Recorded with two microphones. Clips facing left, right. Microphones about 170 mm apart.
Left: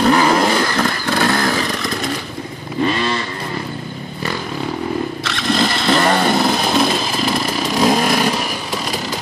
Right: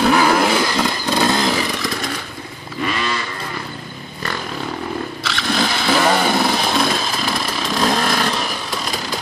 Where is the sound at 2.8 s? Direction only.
30° left (ahead or behind).